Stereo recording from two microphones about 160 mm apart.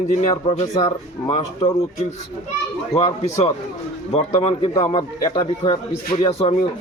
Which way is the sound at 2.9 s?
40° left (ahead or behind).